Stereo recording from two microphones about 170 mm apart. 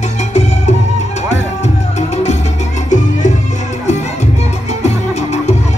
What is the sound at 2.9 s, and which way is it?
Music, 45° left (ahead or behind).